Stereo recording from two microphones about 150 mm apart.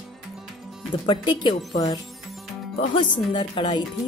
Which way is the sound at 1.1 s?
30° left (ahead or behind).